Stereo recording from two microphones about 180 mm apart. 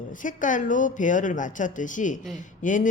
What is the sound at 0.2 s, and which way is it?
Speech, 45° left (ahead or behind).